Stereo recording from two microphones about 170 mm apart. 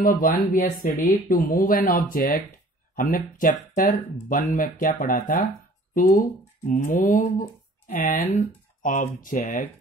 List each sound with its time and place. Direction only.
0.0 s speech: 55° left (ahead or behind)